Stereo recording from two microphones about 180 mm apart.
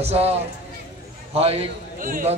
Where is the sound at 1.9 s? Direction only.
50° right (ahead or behind).